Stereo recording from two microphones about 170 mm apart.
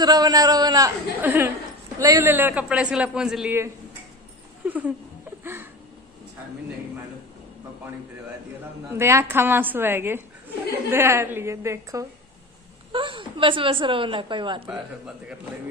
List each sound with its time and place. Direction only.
0.0 s a woman's voice: 20° right (ahead or behind); by 3.5 s 5° right (ahead or behind)
4.6 s a man's voice: 10° right (ahead or behind)
5.4 s a sound: 15° right (ahead or behind)
8.9 s a man's voice: 15° right (ahead or behind)
12.9 s a woman's voice: 30° right (ahead or behind)
14.7 s speech: 5° right (ahead or behind)